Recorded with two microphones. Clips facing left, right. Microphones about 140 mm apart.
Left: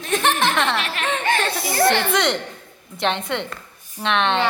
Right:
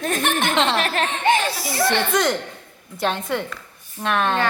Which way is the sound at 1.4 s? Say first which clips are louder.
Left 1 dB; centre (ahead or behind).